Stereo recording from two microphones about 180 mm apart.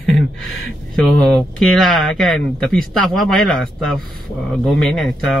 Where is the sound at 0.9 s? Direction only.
5° left (ahead or behind).